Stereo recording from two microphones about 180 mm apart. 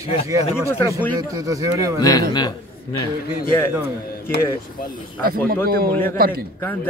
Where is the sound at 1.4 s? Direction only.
20° right (ahead or behind).